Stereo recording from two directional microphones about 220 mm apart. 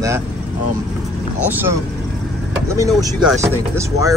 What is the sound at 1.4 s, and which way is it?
Speech, 10° right (ahead or behind).